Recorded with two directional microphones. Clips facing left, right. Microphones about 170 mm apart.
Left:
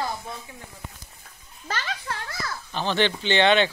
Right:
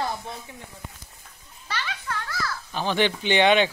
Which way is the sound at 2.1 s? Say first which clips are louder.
Right 5 dB; 25° left (ahead or behind).